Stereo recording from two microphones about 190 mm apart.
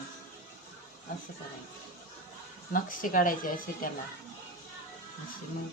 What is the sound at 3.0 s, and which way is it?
Speech, 45° left (ahead or behind).